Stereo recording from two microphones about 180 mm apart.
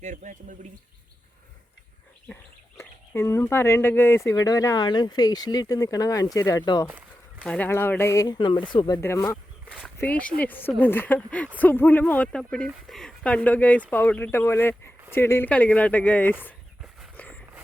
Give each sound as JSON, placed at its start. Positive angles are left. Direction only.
{"t": 0.0, "sound": "speech", "side_deg": -45}
{"t": 2.3, "sound": "speech", "side_deg": 15}
{"t": 7.4, "sound": "speech", "side_deg": 5}
{"t": 9.0, "sound": "speech", "side_deg": 15}
{"t": 17.2, "sound": "a sound", "side_deg": 10}